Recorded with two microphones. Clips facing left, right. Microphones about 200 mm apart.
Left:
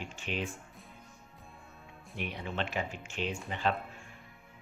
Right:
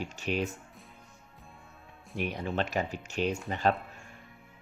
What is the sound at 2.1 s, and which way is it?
Speech, 45° right (ahead or behind).